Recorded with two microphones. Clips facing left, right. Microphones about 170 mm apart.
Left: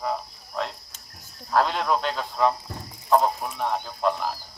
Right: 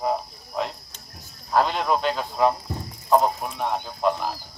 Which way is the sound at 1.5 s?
Centre (ahead or behind).